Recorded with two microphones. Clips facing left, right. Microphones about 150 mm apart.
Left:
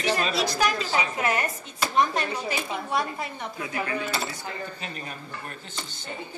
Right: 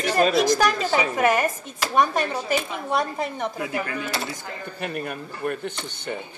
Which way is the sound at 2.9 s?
45° right (ahead or behind).